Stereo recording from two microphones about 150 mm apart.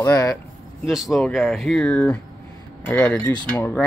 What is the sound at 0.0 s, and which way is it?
Speech, 20° left (ahead or behind).